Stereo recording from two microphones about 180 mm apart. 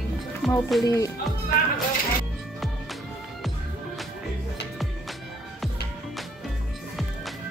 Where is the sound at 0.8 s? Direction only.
15° left (ahead or behind).